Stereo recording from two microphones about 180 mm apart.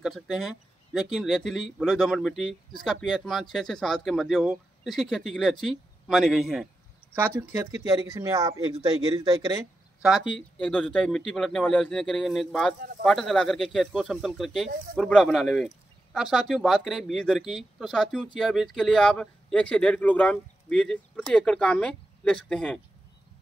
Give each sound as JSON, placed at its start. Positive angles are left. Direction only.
{"t": 0.0, "sound": "speech", "side_deg": 0}
{"t": 7.2, "sound": "speech", "side_deg": -15}
{"t": 10.6, "sound": "speech", "side_deg": 5}